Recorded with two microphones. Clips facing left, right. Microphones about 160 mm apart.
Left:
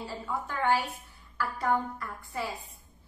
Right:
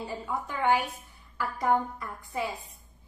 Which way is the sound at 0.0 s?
15° right (ahead or behind).